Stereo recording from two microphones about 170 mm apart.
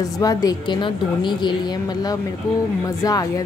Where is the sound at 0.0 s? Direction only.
20° left (ahead or behind).